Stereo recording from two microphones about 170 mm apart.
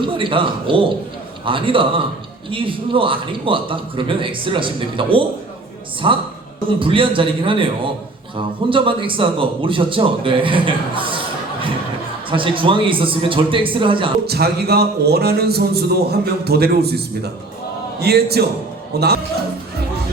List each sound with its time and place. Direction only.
0.0 s a man's voice: 30° right (ahead or behind)
12.3 s a man's voice: 30° right (ahead or behind)
14.3 s a man's voice: 70° right (ahead or behind)
18.0 s a man's voice: 70° right (ahead or behind)